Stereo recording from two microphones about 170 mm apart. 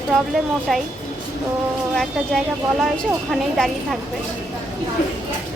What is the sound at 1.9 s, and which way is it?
A woman's voice, centre (ahead or behind).